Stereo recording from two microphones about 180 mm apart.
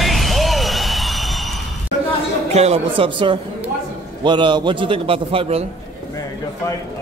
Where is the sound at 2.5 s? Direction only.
35° right (ahead or behind).